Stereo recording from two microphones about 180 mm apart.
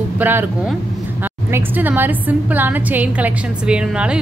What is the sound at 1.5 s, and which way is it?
A woman's voice, 10° right (ahead or behind).